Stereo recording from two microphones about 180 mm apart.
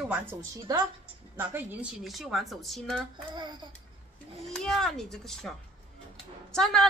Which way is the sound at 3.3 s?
25° right (ahead or behind).